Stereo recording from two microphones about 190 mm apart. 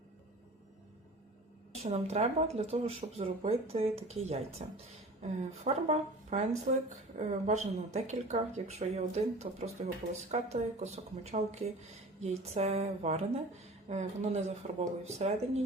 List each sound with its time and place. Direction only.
1.8 s a woman's voice: 35° right (ahead or behind)